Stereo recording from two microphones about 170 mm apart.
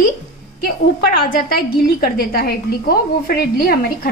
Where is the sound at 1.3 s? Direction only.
60° left (ahead or behind).